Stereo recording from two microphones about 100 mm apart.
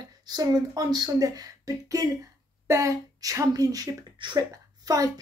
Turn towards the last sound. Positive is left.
turn(degrees=-40)  # may be behind; listen again after turning